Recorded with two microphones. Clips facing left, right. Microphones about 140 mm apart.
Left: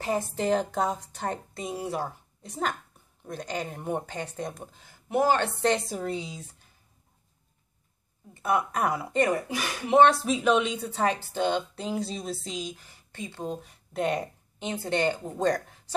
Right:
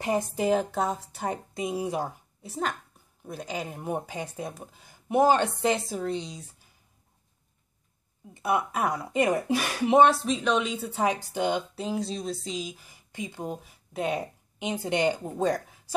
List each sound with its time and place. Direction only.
0.0 s a woman's voice: 15° right (ahead or behind)
2.4 s speech: centre (ahead or behind)
5.0 s a woman's voice: 20° right (ahead or behind)
5.6 s speech: 5° right (ahead or behind)
8.4 s speech: 5° right (ahead or behind)
9.5 s a woman's voice: 20° right (ahead or behind)
9.9 s speech: centre (ahead or behind)
14.6 s a woman's voice: 15° right (ahead or behind)